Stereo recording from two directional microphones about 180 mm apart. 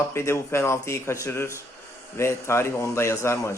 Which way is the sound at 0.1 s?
15° left (ahead or behind).